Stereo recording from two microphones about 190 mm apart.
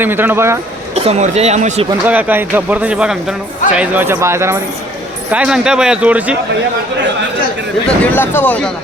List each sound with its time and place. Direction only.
0.0 s speech: 10° right (ahead or behind)
0.9 s speech: 35° right (ahead or behind)
2.0 s speech: 10° right (ahead or behind)
7.9 s speech: 10° left (ahead or behind)